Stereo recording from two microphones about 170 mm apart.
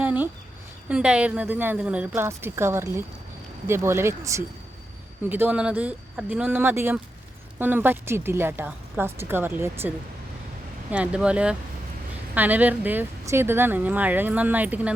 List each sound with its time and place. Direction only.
0.0 s a sound: 10° right (ahead or behind)
0.9 s speech: 5° right (ahead or behind)
10.9 s speech: 5° right (ahead or behind)